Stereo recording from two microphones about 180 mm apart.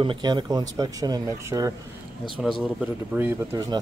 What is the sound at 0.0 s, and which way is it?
Speech, 25° right (ahead or behind).